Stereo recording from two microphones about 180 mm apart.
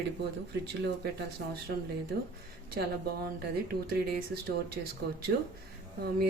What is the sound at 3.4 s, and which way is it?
Speech, 60° right (ahead or behind).